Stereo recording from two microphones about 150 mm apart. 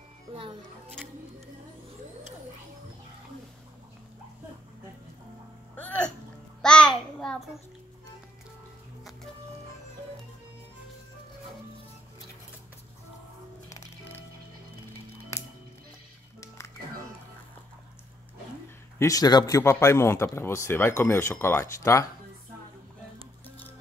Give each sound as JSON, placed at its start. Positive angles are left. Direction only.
{"t": 0.3, "sound": "music", "side_deg": -35}
{"t": 5.8, "sound": "music", "side_deg": 10}
{"t": 6.6, "sound": "a sound", "side_deg": 5}
{"t": 13.7, "sound": "music", "side_deg": 20}
{"t": 16.3, "sound": "music", "side_deg": 20}
{"t": 18.9, "sound": "speech", "side_deg": 25}